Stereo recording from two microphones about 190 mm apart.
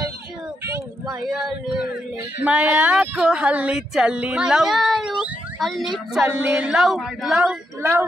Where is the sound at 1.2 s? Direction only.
Centre (ahead or behind).